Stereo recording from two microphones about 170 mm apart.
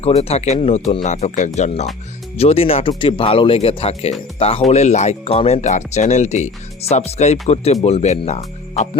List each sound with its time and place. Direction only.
0.0 s speech: 40° left (ahead or behind)